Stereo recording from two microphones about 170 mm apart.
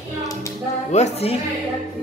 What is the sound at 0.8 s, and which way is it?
Speech, 40° left (ahead or behind).